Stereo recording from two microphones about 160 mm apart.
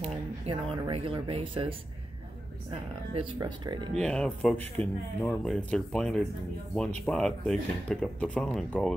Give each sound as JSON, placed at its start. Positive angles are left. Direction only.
{"t": 0.5, "sound": "speech", "side_deg": -35}
{"t": 3.3, "sound": "speech", "side_deg": -30}
{"t": 3.9, "sound": "speech", "side_deg": 5}